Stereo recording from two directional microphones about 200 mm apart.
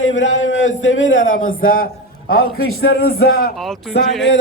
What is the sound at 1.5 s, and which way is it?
Speech, 45° left (ahead or behind).